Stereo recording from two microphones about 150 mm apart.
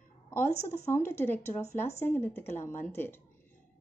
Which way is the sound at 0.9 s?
15° left (ahead or behind).